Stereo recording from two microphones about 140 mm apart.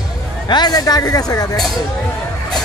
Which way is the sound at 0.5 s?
30° left (ahead or behind).